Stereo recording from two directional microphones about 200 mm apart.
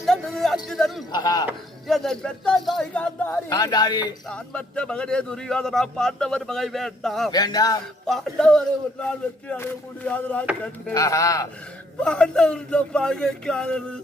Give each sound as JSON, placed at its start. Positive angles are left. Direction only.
{"t": 0.0, "sound": "speech", "side_deg": 0}
{"t": 1.1, "sound": "speech", "side_deg": 20}
{"t": 1.5, "sound": "a man's voice", "side_deg": 0}
{"t": 3.5, "sound": "speech", "side_deg": 20}
{"t": 4.3, "sound": "a man's voice", "side_deg": 5}
{"t": 7.3, "sound": "speech", "side_deg": 20}
{"t": 8.0, "sound": "a man's voice", "side_deg": 0}
{"t": 11.9, "sound": "a man's voice", "side_deg": 5}